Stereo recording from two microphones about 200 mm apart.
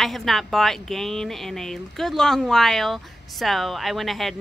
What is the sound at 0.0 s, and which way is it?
Speech, centre (ahead or behind).